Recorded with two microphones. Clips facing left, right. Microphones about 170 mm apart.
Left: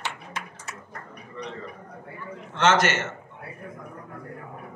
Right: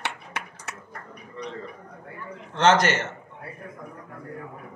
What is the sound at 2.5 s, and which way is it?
Speech, 35° right (ahead or behind).